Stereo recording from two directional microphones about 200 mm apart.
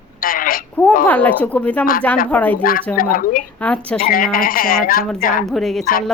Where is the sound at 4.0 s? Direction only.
45° left (ahead or behind).